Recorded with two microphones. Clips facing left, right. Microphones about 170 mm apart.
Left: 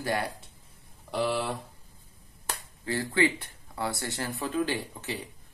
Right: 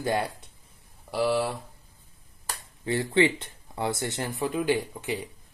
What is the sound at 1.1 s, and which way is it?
Speech, 5° right (ahead or behind).